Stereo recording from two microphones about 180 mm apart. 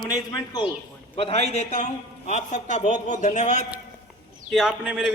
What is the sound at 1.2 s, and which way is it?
A man's voice, 35° left (ahead or behind).